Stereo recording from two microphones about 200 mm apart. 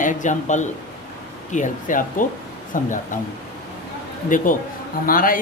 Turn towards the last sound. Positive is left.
turn(degrees=45)  # may be behind; listen again after turning